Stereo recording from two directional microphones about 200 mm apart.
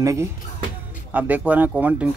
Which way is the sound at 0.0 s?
15° right (ahead or behind).